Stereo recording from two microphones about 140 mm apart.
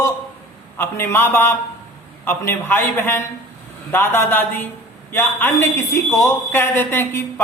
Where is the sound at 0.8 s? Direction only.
15° left (ahead or behind).